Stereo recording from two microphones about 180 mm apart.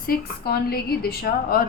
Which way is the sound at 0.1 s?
60° left (ahead or behind).